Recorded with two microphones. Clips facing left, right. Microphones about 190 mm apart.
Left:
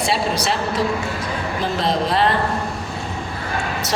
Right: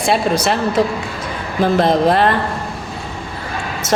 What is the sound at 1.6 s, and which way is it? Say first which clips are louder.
Speech: right 9 dB; 55° right (ahead or behind).